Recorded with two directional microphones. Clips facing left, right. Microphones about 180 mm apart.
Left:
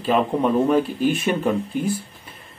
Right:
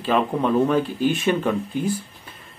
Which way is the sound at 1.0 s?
50° left (ahead or behind).